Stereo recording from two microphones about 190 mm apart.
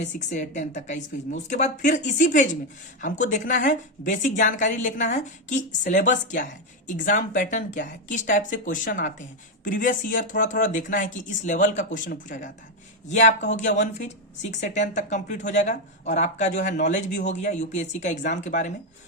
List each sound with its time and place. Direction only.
0.0 s speech: 40° left (ahead or behind)